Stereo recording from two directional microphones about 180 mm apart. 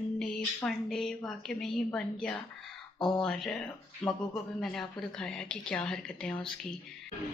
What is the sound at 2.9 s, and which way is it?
Speech, 25° left (ahead or behind).